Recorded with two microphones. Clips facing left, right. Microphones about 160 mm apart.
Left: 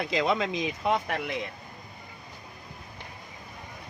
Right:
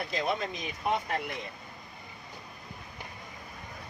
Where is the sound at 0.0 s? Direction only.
90° left.